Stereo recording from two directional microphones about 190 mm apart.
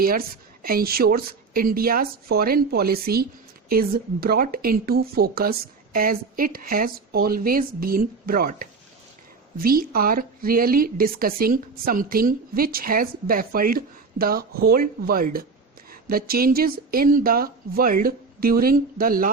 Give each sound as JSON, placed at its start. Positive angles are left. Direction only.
{"t": 0.6, "sound": "a woman's voice", "side_deg": -50}